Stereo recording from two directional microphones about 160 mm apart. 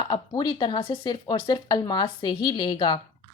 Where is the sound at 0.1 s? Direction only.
25° left (ahead or behind).